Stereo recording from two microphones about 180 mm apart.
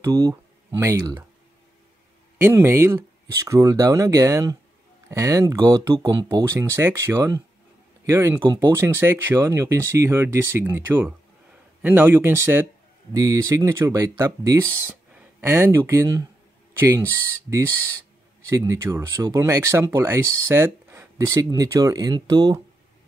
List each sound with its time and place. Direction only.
0.0 s speech: 20° right (ahead or behind)
2.4 s speech: 15° right (ahead or behind)
8.6 s speech: 15° right (ahead or behind)
15.1 s a sound: 10° right (ahead or behind)
15.9 s speech: 15° right (ahead or behind)
18.5 s speech: 15° right (ahead or behind)